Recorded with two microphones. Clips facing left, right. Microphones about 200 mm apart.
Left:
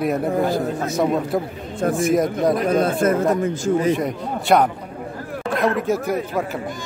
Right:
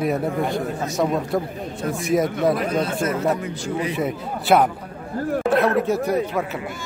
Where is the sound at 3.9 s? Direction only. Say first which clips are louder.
Left 4 dB; 5° right (ahead or behind).